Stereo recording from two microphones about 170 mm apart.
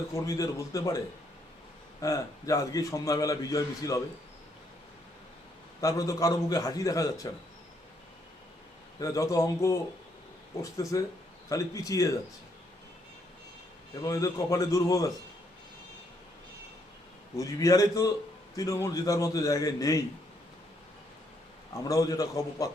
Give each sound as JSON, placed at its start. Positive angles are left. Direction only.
{"t": 0.1, "sound": "a man's voice", "side_deg": 20}
{"t": 5.8, "sound": "a man's voice", "side_deg": 20}
{"t": 9.0, "sound": "a man's voice", "side_deg": 20}
{"t": 14.0, "sound": "a man's voice", "side_deg": 20}
{"t": 17.3, "sound": "a man's voice", "side_deg": 20}
{"t": 21.8, "sound": "a man's voice", "side_deg": 20}